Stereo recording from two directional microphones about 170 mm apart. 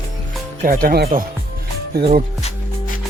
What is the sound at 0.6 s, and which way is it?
Speech, 55° right (ahead or behind).